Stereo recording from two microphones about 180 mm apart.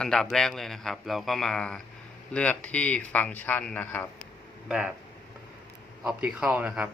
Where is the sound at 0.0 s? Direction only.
5° left (ahead or behind).